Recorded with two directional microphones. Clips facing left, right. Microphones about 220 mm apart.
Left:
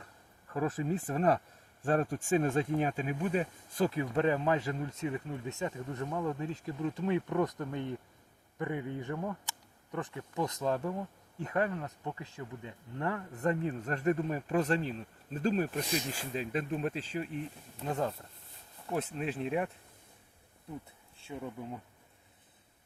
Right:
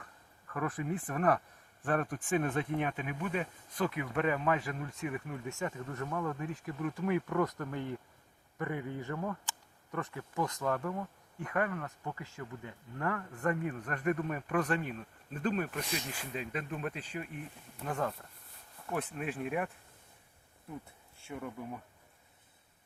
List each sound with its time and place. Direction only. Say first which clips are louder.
0.5 s speech: left 3 dB; 25° left (ahead or behind); by 9.4 s 10° left (ahead or behind)
9.9 s speech: left 1 dB; 20° left (ahead or behind)
21.2 s speech: left 1 dB; 20° left (ahead or behind)